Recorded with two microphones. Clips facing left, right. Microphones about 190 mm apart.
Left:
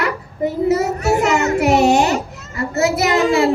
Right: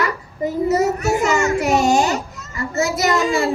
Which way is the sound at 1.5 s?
65° left (ahead or behind).